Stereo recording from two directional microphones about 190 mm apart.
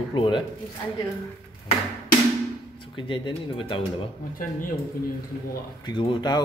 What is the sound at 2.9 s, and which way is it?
Speech, 25° left (ahead or behind).